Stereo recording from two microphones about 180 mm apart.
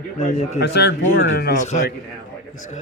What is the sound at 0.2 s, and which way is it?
Speech, 40° left (ahead or behind).